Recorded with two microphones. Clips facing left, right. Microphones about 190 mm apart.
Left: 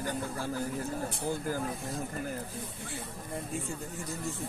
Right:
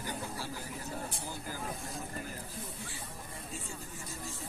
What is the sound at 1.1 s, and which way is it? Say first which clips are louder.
Speech: left 9 dB; 55° left (ahead or behind).